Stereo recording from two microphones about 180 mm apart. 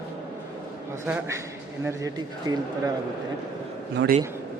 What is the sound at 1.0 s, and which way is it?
A man's voice, 10° right (ahead or behind).